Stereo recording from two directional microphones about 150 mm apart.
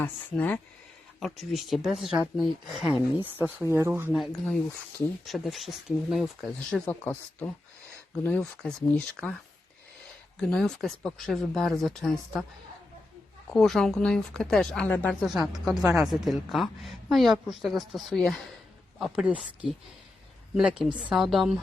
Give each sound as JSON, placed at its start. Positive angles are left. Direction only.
{"t": 0.0, "sound": "speech", "side_deg": 10}
{"t": 1.2, "sound": "a woman's voice", "side_deg": 0}
{"t": 3.3, "sound": "speech", "side_deg": -15}
{"t": 5.2, "sound": "a woman's voice", "side_deg": 0}
{"t": 10.4, "sound": "a woman's voice", "side_deg": 5}
{"t": 13.5, "sound": "a woman's voice", "side_deg": 5}
{"t": 15.3, "sound": "a woman's voice", "side_deg": 0}